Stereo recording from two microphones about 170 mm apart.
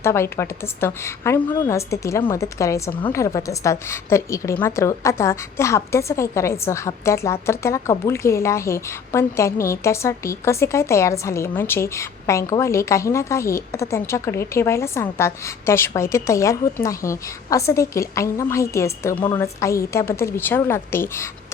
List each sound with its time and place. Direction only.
0.0 s a woman's voice: 15° left (ahead or behind)